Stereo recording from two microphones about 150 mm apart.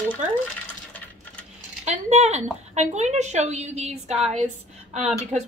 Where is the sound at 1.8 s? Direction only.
50° right (ahead or behind).